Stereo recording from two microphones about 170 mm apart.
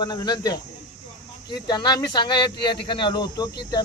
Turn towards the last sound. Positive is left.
turn(degrees=25)  # may be behind; listen again after turning